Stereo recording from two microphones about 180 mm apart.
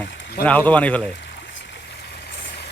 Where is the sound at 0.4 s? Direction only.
5° left (ahead or behind).